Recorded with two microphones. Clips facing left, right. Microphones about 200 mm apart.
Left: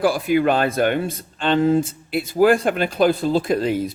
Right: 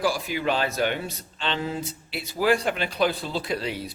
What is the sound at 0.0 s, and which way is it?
Speech, 55° left (ahead or behind).